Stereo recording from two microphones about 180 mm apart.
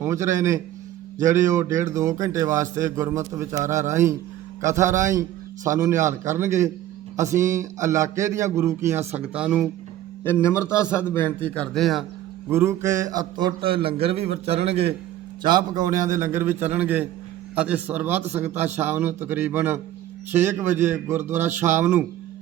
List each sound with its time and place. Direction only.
0.0 s a man's voice: 15° right (ahead or behind)
10.2 s a man's voice: 15° left (ahead or behind)
12.5 s a man's voice: 15° right (ahead or behind); by 14.9 s 35° right (ahead or behind)
15.4 s a man's voice: 25° right (ahead or behind)